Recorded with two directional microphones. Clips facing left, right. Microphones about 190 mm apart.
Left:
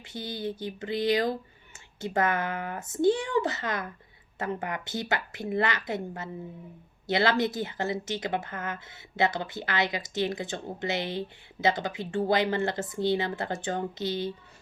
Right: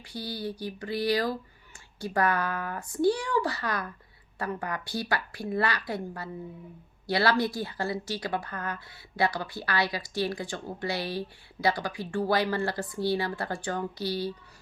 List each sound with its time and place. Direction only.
0.0 s speech: 20° left (ahead or behind)